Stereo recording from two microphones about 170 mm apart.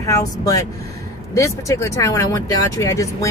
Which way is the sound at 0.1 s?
20° left (ahead or behind).